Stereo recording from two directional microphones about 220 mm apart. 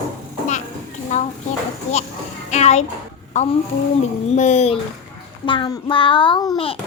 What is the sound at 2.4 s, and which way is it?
Speech, 30° left (ahead or behind).